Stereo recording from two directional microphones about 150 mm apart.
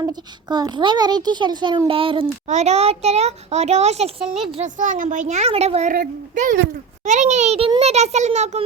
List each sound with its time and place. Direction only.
0.0 s a child's voice: 25° right (ahead or behind)
2.5 s a child's voice: 50° right (ahead or behind)
5.9 s a child's voice: 65° right (ahead or behind); by 8.6 s 45° right (ahead or behind)